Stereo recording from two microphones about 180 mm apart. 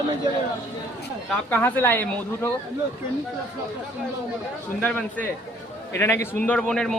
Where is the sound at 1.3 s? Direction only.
10° left (ahead or behind).